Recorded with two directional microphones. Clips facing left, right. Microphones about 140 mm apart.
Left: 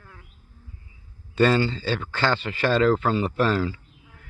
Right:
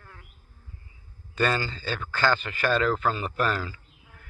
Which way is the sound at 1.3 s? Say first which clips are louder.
Left 6 dB; 25° left (ahead or behind).